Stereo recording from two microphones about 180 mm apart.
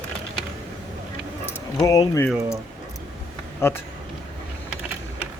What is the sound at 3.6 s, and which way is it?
Speech, 15° left (ahead or behind).